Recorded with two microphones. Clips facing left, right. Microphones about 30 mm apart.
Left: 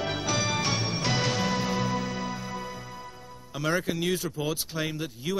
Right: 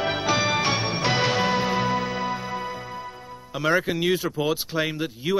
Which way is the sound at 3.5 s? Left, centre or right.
Right.